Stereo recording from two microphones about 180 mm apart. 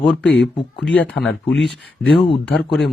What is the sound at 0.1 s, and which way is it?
Speech, 5° left (ahead or behind).